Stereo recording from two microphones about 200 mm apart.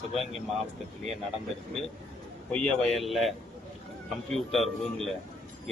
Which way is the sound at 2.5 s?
Centre (ahead or behind).